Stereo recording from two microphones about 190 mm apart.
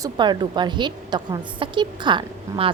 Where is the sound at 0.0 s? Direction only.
25° right (ahead or behind).